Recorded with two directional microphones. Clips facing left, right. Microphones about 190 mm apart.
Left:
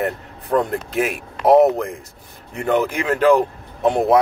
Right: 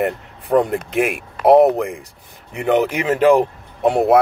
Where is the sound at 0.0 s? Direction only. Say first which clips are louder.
Right 3 dB; 15° right (ahead or behind).